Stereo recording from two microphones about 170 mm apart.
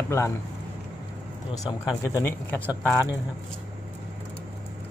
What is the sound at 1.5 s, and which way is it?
Speech, 20° left (ahead or behind).